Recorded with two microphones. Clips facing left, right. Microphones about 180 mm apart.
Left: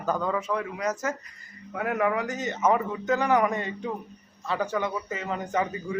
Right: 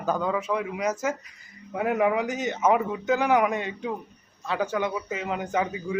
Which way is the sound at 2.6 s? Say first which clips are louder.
Right 1 dB; 5° right (ahead or behind).